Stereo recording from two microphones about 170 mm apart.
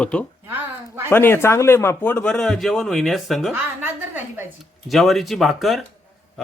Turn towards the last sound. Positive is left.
turn(degrees=0)  # may be behind; listen again after turning